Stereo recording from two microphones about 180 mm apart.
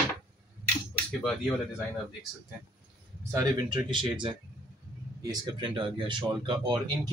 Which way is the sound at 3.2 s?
20° right (ahead or behind).